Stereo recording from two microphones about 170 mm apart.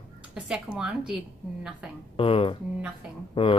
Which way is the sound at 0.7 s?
5° right (ahead or behind).